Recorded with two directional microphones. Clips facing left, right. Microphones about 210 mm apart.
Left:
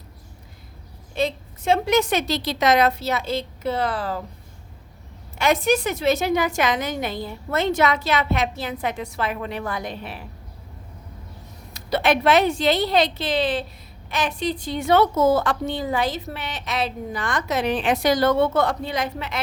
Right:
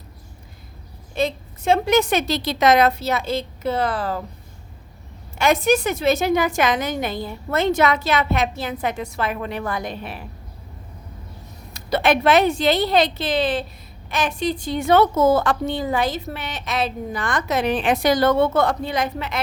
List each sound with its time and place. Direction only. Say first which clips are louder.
1.1 s a woman's voice: right 1 dB; 45° right (ahead or behind)
5.4 s a woman's voice: right 2 dB; 45° right (ahead or behind)
11.7 s a woman's voice: right 2 dB; 50° right (ahead or behind)